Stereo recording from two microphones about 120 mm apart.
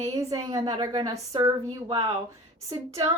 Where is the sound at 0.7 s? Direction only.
40° right (ahead or behind).